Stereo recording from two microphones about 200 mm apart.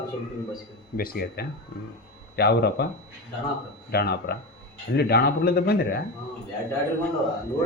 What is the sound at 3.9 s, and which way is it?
A man's voice, 50° left (ahead or behind).